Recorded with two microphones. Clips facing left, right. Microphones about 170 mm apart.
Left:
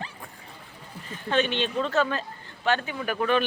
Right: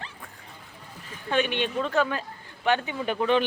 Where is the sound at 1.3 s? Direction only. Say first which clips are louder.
Even; 10° right (ahead or behind).